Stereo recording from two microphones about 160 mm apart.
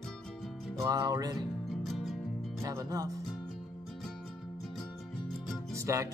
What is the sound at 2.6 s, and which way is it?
Speech, 20° right (ahead or behind).